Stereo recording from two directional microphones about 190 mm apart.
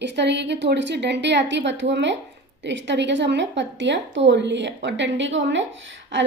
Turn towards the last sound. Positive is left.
turn(degrees=-75)  # may be behind; listen again after turning